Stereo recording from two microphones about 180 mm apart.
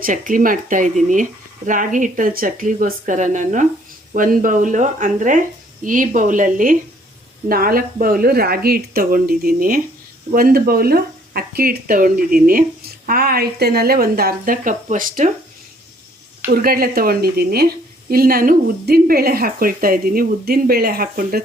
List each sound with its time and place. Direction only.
0.0 s speech: 50° right (ahead or behind)
16.5 s speech: 55° right (ahead or behind)